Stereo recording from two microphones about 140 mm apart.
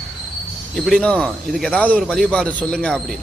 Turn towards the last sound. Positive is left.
turn(degrees=5)  # may be behind; listen again after turning